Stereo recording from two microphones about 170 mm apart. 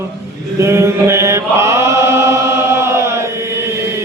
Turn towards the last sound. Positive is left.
turn(degrees=-15)  # may be behind; listen again after turning